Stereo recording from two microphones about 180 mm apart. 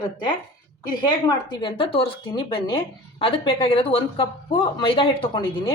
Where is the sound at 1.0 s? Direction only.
25° left (ahead or behind).